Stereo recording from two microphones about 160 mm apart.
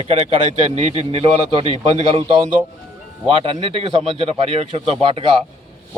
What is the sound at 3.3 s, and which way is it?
A man's voice, 35° right (ahead or behind).